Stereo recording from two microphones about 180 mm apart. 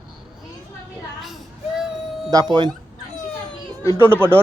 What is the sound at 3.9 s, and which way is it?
Speech, 10° right (ahead or behind).